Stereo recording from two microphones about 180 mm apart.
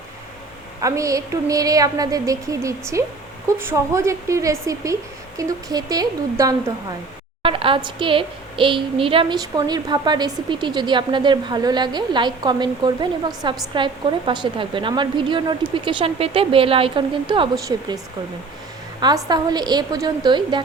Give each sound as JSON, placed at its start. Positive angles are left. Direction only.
{"t": 0.8, "sound": "a woman's voice", "side_deg": -20}
{"t": 19.0, "sound": "a woman's voice", "side_deg": -20}